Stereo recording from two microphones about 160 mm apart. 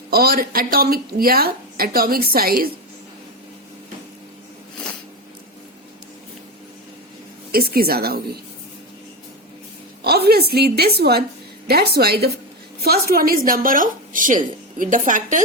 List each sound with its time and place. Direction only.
0.1 s speech: 70° right (ahead or behind)
7.5 s speech: 75° right (ahead or behind)
10.0 s a woman's voice: 80° right; by 15.4 s 55° right (ahead or behind)